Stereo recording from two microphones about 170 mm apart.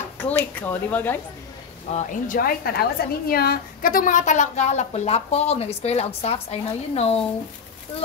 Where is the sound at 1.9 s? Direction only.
45° left (ahead or behind).